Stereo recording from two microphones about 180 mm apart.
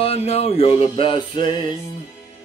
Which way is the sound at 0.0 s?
35° left (ahead or behind).